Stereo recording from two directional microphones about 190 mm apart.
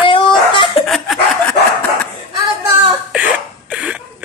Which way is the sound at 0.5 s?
25° left (ahead or behind).